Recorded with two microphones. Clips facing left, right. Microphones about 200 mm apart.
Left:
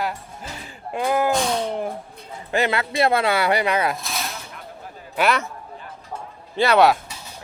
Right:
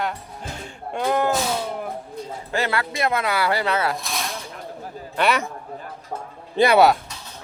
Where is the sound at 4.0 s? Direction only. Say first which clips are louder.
Right 1 dB; centre (ahead or behind).